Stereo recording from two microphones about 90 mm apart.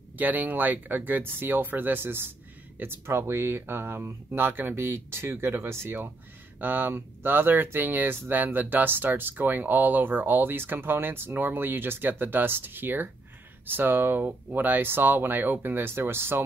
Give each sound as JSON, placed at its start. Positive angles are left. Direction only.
{"t": 0.2, "sound": "speech", "side_deg": -20}